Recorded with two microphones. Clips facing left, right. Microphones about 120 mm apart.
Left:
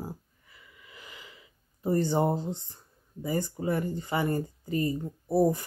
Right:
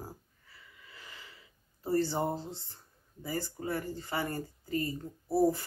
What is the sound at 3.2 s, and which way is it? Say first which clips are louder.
Speech: left 6 dB; 20° left (ahead or behind).